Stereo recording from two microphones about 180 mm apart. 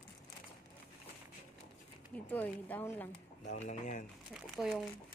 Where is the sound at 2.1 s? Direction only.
10° left (ahead or behind).